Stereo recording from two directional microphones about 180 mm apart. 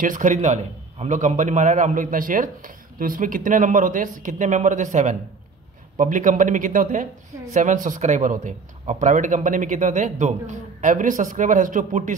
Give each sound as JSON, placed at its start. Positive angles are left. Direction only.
{"t": 0.0, "sound": "a man's voice", "side_deg": -45}